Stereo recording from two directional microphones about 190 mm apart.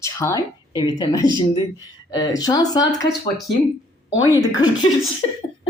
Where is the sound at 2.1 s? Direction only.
20° left (ahead or behind).